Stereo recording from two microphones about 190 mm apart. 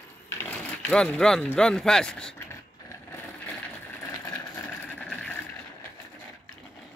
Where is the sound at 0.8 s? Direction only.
5° left (ahead or behind).